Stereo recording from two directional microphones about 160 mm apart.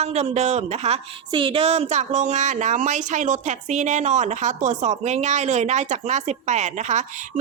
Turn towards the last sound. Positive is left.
turn(degrees=-45)  # may be behind; listen again after turning